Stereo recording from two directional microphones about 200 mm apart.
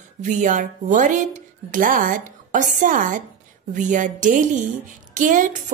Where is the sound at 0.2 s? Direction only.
40° right (ahead or behind).